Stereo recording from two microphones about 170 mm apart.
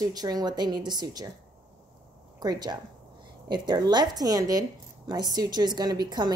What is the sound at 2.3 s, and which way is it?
A woman's voice, 25° right (ahead or behind).